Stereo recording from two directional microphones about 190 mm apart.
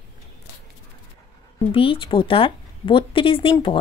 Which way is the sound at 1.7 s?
30° left (ahead or behind).